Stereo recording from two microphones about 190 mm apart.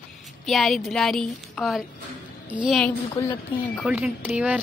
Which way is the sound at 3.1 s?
15° left (ahead or behind).